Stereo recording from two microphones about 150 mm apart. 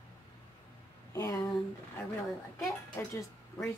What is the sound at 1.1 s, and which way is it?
Speech, 20° left (ahead or behind).